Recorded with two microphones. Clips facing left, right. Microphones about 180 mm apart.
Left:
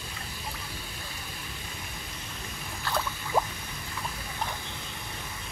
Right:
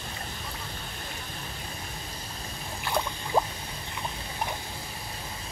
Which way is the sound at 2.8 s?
15° right (ahead or behind).